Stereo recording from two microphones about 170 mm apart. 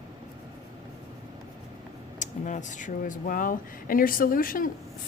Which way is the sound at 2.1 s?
50° left (ahead or behind).